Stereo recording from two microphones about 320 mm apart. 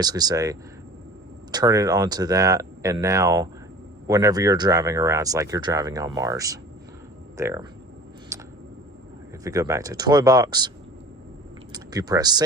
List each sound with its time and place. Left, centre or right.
0.0 s speech: centre
8.3 s a sound: centre
9.4 s speech: centre
11.7 s speech: centre